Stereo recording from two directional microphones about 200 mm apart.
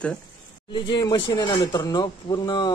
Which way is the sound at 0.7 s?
25° left (ahead or behind).